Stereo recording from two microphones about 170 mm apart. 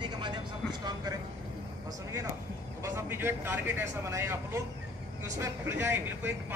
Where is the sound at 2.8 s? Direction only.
15° right (ahead or behind).